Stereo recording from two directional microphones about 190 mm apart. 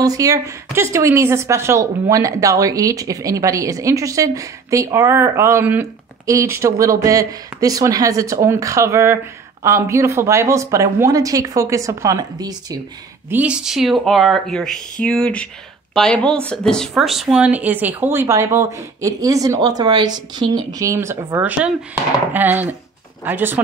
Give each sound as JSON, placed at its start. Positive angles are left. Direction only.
{"t": 0.0, "sound": "a woman's voice", "side_deg": -20}
{"t": 13.3, "sound": "a woman's voice", "side_deg": -5}